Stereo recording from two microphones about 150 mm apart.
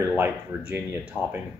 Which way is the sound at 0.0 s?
15° right (ahead or behind).